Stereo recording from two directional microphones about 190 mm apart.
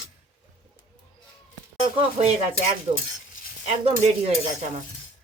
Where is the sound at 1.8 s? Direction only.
30° right (ahead or behind).